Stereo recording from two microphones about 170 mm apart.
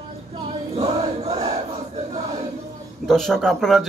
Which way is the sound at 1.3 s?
20° right (ahead or behind).